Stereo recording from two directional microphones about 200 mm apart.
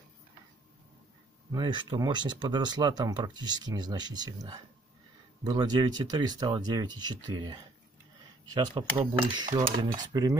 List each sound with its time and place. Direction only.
1.5 s speech: 20° right (ahead or behind)